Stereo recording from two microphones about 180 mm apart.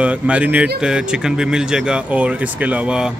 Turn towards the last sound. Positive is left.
turn(degrees=-5)  # may be behind; listen again after turning